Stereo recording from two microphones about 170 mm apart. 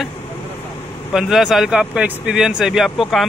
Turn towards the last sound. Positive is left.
turn(degrees=0)  # may be behind; listen again after turning